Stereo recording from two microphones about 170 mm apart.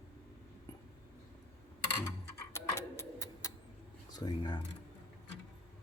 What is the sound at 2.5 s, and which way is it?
Bird, 15° left (ahead or behind).